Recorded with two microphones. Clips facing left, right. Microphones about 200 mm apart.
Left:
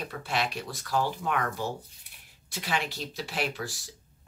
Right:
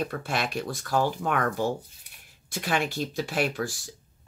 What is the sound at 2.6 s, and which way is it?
Speech, 50° right (ahead or behind).